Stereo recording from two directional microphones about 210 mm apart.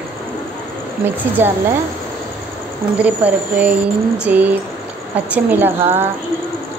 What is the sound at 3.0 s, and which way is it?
A woman's voice, 5° right (ahead or behind).